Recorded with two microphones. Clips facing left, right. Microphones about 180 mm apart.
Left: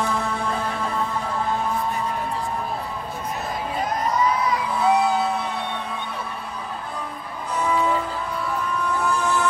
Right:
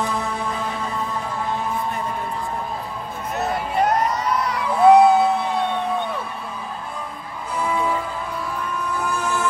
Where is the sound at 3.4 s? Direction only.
70° right (ahead or behind).